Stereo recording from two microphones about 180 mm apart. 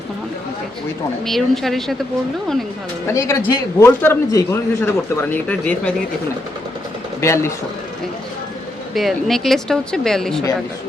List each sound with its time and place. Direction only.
1.2 s speech: centre (ahead or behind)
3.1 s a man's voice: 15° left (ahead or behind)
7.2 s a man's voice: 15° left (ahead or behind)
9.0 s speech: centre (ahead or behind)